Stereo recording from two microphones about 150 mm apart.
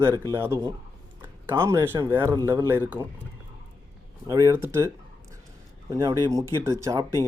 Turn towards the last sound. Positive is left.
turn(degrees=-20)  # may be behind; listen again after turning